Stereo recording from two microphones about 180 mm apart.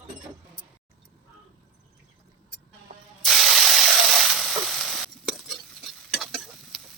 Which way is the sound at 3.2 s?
Centre (ahead or behind).